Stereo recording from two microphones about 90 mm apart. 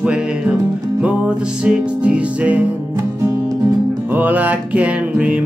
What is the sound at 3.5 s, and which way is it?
Music, 40° right (ahead or behind).